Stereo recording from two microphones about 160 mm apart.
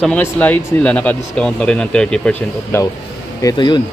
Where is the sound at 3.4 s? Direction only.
25° left (ahead or behind).